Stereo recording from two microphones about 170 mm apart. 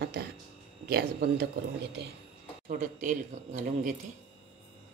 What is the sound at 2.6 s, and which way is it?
Speech, 45° right (ahead or behind).